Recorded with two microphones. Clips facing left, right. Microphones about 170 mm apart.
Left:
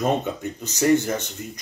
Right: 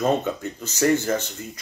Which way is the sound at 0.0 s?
15° left (ahead or behind).